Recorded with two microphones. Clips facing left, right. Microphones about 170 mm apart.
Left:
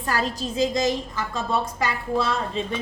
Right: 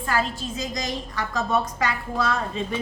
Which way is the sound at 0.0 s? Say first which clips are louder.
Even; 40° left (ahead or behind).